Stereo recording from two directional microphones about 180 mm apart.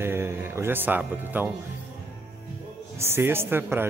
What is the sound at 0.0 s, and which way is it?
Speech, 15° right (ahead or behind).